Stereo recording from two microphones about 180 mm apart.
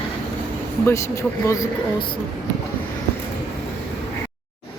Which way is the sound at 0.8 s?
15° left (ahead or behind).